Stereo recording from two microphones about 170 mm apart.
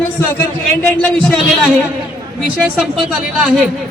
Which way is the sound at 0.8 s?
5° left (ahead or behind).